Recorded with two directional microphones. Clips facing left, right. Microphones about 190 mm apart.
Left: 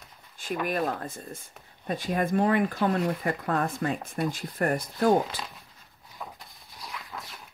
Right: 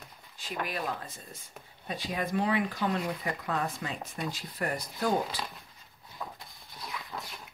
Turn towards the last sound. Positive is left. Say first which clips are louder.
# even
turn(degrees=5)  # may be behind; listen again after turning